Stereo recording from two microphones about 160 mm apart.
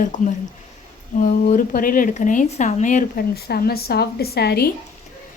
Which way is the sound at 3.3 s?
75° left (ahead or behind).